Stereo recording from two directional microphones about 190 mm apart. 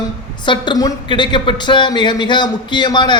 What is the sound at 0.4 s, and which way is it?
A man's voice, 25° left (ahead or behind).